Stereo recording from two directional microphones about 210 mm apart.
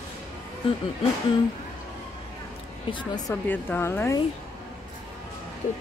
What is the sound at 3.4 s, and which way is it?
Speech, 10° left (ahead or behind).